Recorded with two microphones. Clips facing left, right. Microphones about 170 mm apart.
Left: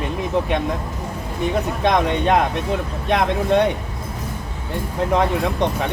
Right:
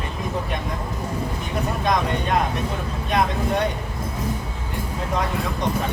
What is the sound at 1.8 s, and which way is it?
Speech, 75° left (ahead or behind).